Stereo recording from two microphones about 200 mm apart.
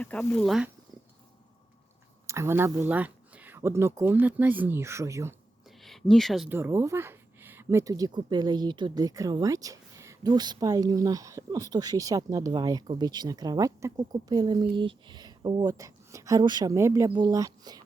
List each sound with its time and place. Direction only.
0.0 s speech: 5° left (ahead or behind)
2.2 s speech: 15° right (ahead or behind)
5.8 s speech: centre (ahead or behind); by 17.8 s 20° right (ahead or behind)